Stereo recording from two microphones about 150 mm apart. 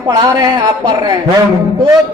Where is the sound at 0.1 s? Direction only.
25° right (ahead or behind).